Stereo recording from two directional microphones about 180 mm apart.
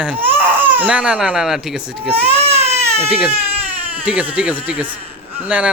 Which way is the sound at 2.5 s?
15° right (ahead or behind).